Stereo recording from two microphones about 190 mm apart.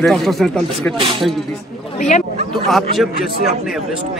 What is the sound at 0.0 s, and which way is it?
Speech, centre (ahead or behind).